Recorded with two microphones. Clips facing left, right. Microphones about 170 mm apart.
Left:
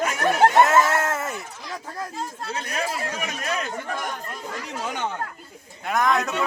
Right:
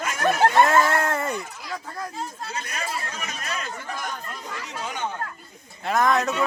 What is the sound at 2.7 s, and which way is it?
Speech, 55° left (ahead or behind).